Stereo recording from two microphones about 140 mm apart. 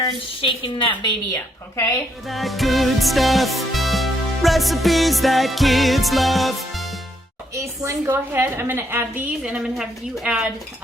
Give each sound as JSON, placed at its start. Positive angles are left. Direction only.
{"t": 0.0, "sound": "a woman's voice", "side_deg": 35}
{"t": 1.3, "sound": "a woman's voice", "side_deg": 20}
{"t": 2.2, "sound": "music", "side_deg": 0}
{"t": 7.5, "sound": "a woman's voice", "side_deg": -20}